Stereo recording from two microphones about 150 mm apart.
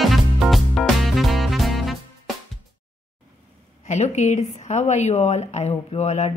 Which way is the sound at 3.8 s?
50° left (ahead or behind).